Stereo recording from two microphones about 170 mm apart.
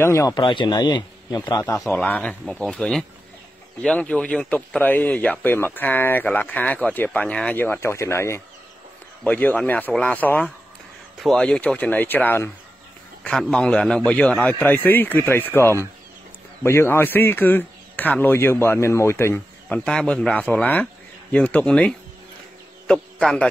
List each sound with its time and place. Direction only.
0.0 s a man's voice: 15° left (ahead or behind)
0.4 s a man's voice: 30° left (ahead or behind)
1.9 s a man's voice: 10° left (ahead or behind)